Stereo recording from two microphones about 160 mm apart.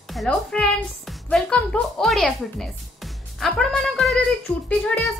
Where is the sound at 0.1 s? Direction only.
Centre (ahead or behind).